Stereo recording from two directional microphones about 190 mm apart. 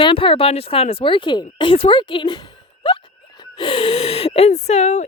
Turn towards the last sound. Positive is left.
turn(degrees=35)  # may be behind; listen again after turning